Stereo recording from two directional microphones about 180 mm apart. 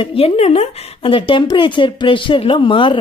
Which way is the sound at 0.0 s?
30° left (ahead or behind).